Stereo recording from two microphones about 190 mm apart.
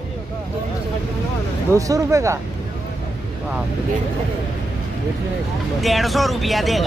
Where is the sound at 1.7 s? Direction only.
15° right (ahead or behind).